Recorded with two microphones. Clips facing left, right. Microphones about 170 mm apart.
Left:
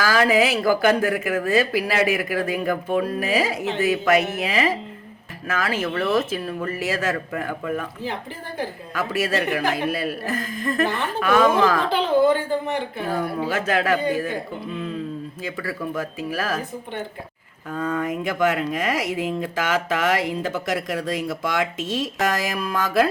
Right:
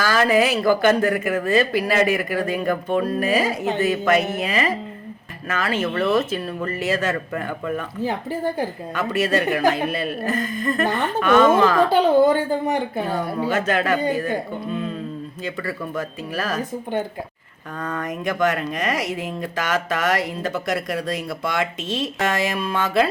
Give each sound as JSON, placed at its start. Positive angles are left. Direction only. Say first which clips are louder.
{"t": 0.0, "sound": "speech", "louder": "right 1 dB", "side_deg": 5}
{"t": 8.0, "sound": "speech", "louder": "right 7 dB", "side_deg": -45}
{"t": 9.0, "sound": "speech", "louder": "right 2 dB", "side_deg": 5}
{"t": 11.9, "sound": "speech", "louder": "right 3 dB", "side_deg": -45}
{"t": 13.1, "sound": "speech", "louder": "right 1 dB", "side_deg": 0}
{"t": 15.5, "sound": "speech", "louder": "left 1 dB", "side_deg": 5}
{"t": 17.7, "sound": "speech", "louder": "left 3 dB", "side_deg": 5}
{"t": 22.2, "sound": "speech", "louder": "right 2 dB", "side_deg": 0}